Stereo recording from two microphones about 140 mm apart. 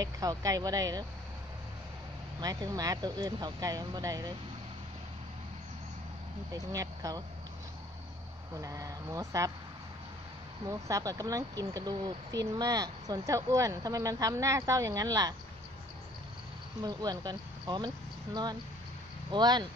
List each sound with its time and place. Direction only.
0.0 s speech: 25° right (ahead or behind)
2.4 s speech: 30° right (ahead or behind)
6.5 s speech: 25° right (ahead or behind)
8.5 s speech: 25° right (ahead or behind)
10.7 s speech: 25° right (ahead or behind)
16.8 s speech: 30° right (ahead or behind)